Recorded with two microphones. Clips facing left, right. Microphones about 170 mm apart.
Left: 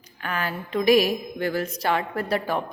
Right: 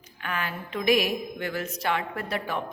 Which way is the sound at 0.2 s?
40° left (ahead or behind).